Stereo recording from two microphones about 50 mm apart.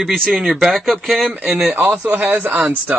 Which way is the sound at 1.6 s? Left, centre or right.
Centre.